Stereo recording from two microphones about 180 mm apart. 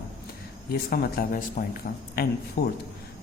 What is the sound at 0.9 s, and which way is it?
Speech, 55° left (ahead or behind).